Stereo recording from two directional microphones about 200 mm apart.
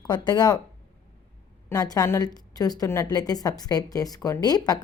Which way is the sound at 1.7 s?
20° left (ahead or behind).